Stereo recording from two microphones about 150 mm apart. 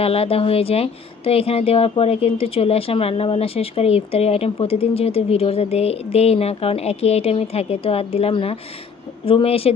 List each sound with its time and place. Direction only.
0.0 s speech: 40° left (ahead or behind)